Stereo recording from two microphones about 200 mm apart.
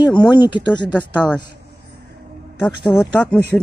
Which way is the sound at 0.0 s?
20° left (ahead or behind).